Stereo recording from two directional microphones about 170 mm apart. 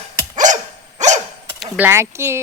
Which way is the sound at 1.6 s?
10° right (ahead or behind).